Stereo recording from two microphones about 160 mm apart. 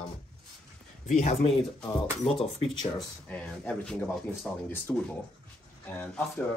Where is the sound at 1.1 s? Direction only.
45° left (ahead or behind).